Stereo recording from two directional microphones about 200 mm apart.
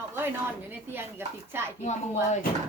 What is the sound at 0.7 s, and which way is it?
Speech, 10° right (ahead or behind).